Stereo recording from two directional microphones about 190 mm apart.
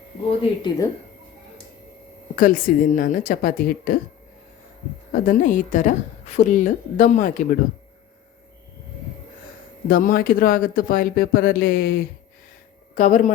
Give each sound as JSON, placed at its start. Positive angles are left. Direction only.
{"t": 0.3, "sound": "speech", "side_deg": 25}
{"t": 2.3, "sound": "a woman's voice", "side_deg": 45}
{"t": 5.1, "sound": "a woman's voice", "side_deg": 45}
{"t": 9.9, "sound": "a woman's voice", "side_deg": 45}